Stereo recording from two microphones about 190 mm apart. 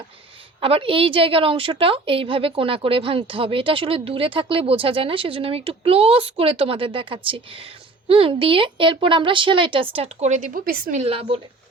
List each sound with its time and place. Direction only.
0.6 s a woman's voice: 30° right (ahead or behind); by 11.0 s 50° right (ahead or behind)
11.0 s speech: 30° right (ahead or behind)